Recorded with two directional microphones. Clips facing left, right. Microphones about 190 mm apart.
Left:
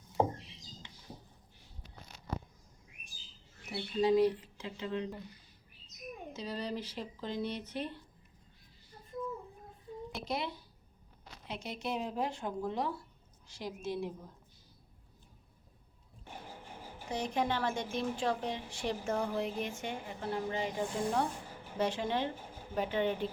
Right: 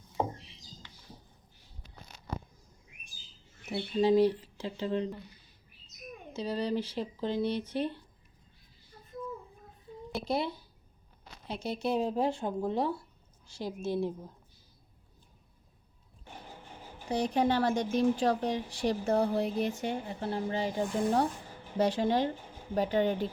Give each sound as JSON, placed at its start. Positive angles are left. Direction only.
{"t": 3.7, "sound": "a woman's voice", "side_deg": -30}
{"t": 6.3, "sound": "a woman's voice", "side_deg": -30}
{"t": 10.2, "sound": "a woman's voice", "side_deg": -30}
{"t": 17.1, "sound": "a woman's voice", "side_deg": -35}